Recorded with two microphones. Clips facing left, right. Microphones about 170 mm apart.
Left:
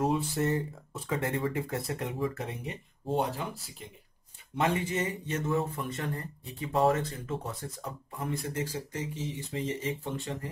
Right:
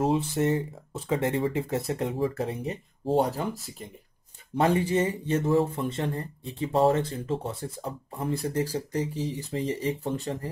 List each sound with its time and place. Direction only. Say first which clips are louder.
0.0 s speech: right 4 dB; 25° right (ahead or behind)